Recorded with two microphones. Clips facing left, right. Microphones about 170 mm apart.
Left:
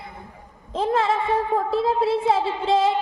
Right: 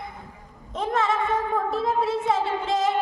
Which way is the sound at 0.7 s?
30° left (ahead or behind).